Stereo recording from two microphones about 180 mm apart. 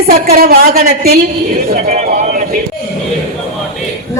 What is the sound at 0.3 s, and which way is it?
Speech, 55° right (ahead or behind).